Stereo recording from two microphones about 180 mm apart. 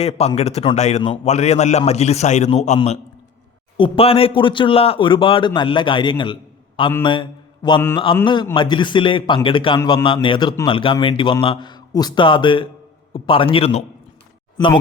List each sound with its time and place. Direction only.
0.0 s a man's voice: 35° left (ahead or behind)
7.0 s mantra: 25° left (ahead or behind)
7.9 s a man's voice: 25° left (ahead or behind)